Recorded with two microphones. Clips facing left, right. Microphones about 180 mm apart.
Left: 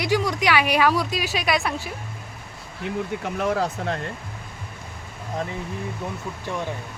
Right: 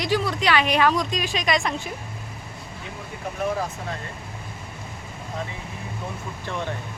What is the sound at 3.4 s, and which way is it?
Speech, 75° left (ahead or behind).